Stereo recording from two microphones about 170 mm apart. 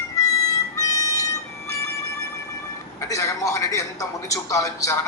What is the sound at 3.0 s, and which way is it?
A man's voice, 15° left (ahead or behind).